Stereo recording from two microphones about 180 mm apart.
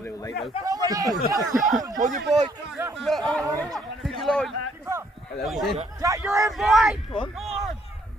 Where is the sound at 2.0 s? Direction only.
45° right (ahead or behind).